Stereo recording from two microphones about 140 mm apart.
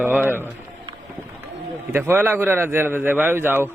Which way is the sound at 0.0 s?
10° right (ahead or behind).